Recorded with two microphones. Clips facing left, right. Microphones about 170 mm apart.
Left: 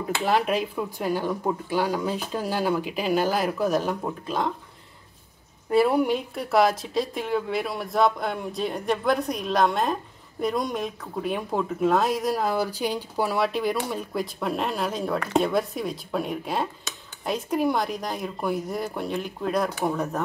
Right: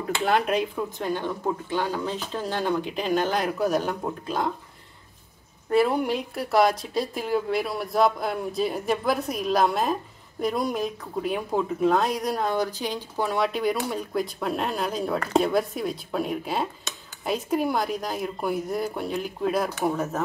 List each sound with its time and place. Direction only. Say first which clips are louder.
0.2 s speech: even; centre (ahead or behind)
5.7 s speech: left 1 dB; 5° left (ahead or behind)